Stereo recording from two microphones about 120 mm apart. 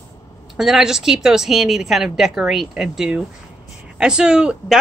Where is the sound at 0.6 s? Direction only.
5° right (ahead or behind).